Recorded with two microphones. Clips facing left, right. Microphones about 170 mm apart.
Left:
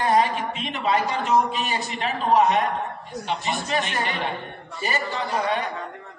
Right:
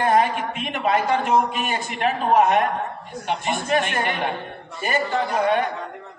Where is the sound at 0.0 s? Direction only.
55° right (ahead or behind).